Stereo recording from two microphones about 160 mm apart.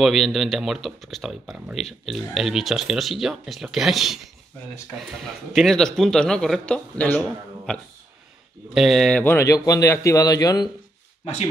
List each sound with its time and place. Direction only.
0.0 s speech: centre (ahead or behind)
5.5 s speech: centre (ahead or behind)
9.2 s speech: 15° left (ahead or behind)